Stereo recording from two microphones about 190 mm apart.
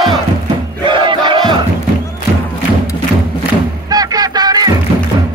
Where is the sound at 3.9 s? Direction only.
20° right (ahead or behind).